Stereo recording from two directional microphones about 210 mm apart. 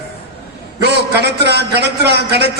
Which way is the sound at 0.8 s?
50° right (ahead or behind).